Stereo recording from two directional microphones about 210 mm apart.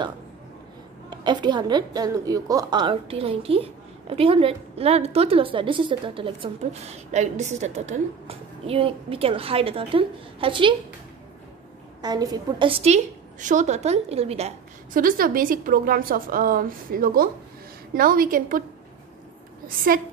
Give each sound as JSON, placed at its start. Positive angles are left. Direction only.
{"t": 1.1, "sound": "a woman's voice", "side_deg": -20}
{"t": 12.0, "sound": "a woman's voice", "side_deg": -20}
{"t": 15.0, "sound": "a woman's voice", "side_deg": -40}